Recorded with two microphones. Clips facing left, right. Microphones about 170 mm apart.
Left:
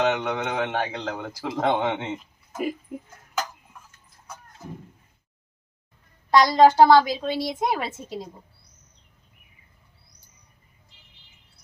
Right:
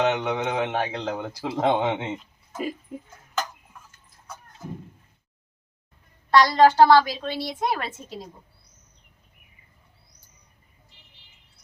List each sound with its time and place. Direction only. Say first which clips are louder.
0.0 s speech: even; centre (ahead or behind)
2.1 s a sound: left 1 dB; 5° left (ahead or behind)
6.3 s a woman's voice: left 1 dB; 15° left (ahead or behind)